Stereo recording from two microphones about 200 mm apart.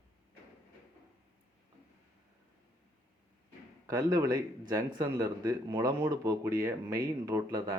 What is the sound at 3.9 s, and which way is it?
Speech, 15° right (ahead or behind).